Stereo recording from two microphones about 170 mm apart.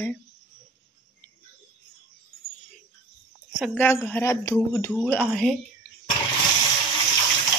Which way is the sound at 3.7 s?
10° left (ahead or behind).